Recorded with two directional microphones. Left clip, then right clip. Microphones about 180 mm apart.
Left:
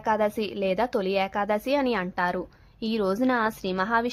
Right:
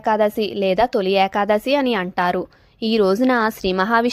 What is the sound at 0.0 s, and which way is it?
A woman's voice, 25° right (ahead or behind).